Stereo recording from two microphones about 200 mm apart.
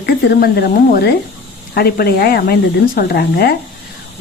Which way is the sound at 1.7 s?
50° left (ahead or behind).